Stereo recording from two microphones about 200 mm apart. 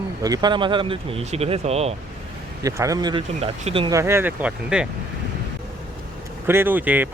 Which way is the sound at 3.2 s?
30° right (ahead or behind).